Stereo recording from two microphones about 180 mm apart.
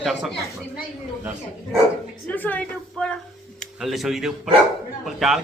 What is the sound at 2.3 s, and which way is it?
A man's voice, 10° left (ahead or behind).